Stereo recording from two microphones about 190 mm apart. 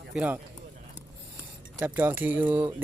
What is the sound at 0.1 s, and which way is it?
Speech, 5° right (ahead or behind).